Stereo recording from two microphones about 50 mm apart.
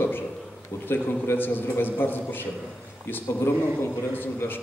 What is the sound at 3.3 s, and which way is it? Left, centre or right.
Speech, left.